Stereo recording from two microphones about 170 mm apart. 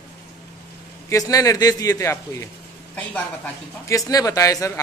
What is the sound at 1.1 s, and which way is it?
A man's voice, 20° left (ahead or behind).